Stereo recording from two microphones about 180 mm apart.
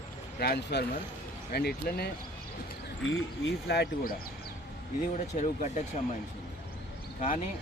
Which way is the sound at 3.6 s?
65° left (ahead or behind).